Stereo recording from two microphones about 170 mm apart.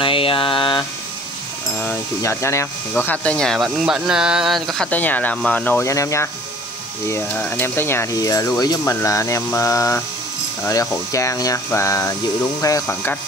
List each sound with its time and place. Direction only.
0.0 s mantra: 30° left (ahead or behind)
1.8 s speech: 15° left (ahead or behind)